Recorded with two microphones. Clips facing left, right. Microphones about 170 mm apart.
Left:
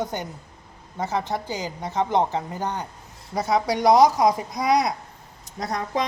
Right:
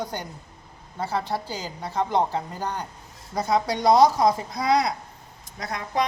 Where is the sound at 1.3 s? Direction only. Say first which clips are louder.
Left 2 dB; 15° left (ahead or behind).